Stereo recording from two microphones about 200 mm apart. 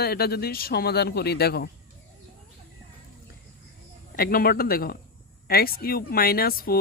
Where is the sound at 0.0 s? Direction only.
50° left (ahead or behind).